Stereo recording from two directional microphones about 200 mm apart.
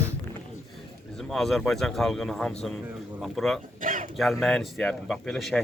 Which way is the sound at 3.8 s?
40° right (ahead or behind).